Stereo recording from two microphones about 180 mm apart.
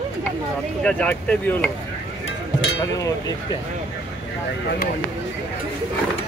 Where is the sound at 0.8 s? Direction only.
5° left (ahead or behind).